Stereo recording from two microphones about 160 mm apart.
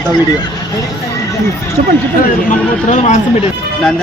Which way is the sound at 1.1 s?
20° left (ahead or behind).